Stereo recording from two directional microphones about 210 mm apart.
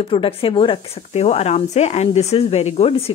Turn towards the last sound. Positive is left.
turn(degrees=30)  # may be behind; listen again after turning